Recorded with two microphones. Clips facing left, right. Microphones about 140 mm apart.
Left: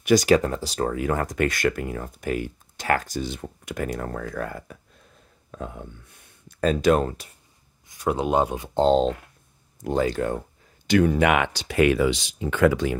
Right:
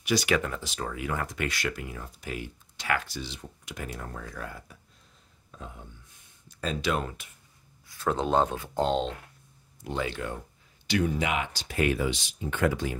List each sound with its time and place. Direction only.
0.0 s speech: 45° left (ahead or behind)
3.9 s speech: 65° left (ahead or behind); by 7.3 s 40° left (ahead or behind)
7.9 s speech: 15° left (ahead or behind)
8.8 s speech: 35° left (ahead or behind)
10.9 s speech: 60° left (ahead or behind); by 13.0 s 85° left